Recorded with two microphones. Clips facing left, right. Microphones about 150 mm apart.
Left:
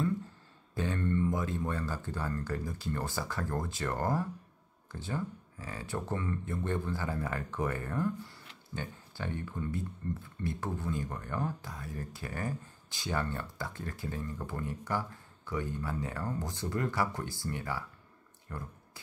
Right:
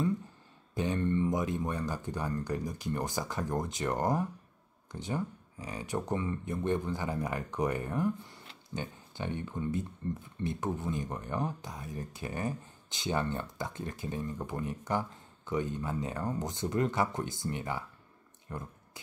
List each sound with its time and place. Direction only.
0.7 s speech: 20° right (ahead or behind)